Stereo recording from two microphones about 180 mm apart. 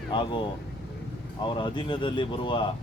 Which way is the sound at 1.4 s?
25° left (ahead or behind).